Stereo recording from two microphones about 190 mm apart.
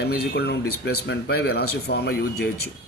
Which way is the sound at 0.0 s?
60° left (ahead or behind).